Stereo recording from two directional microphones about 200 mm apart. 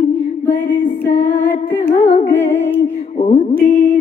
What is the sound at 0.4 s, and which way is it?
Music, 10° left (ahead or behind).